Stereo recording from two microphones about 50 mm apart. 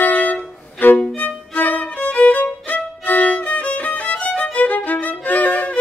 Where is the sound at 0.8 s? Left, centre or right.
Left.